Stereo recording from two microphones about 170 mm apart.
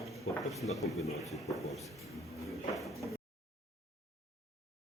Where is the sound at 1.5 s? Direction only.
Centre (ahead or behind).